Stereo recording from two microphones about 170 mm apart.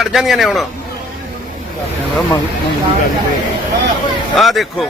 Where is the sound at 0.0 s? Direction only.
Centre (ahead or behind).